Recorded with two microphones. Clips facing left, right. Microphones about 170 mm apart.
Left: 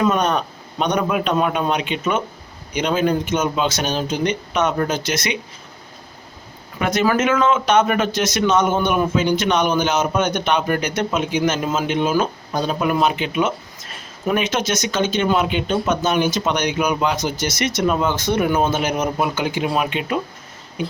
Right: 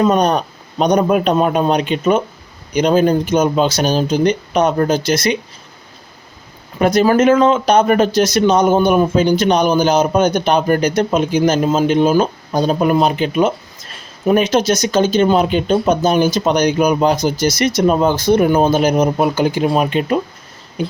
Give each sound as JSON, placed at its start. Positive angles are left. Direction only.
{"t": 0.0, "sound": "speech", "side_deg": -35}
{"t": 6.7, "sound": "speech", "side_deg": -35}